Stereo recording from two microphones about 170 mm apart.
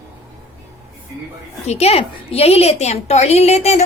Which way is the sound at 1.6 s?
40° left (ahead or behind).